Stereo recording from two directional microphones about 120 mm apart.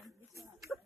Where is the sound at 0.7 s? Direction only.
10° left (ahead or behind).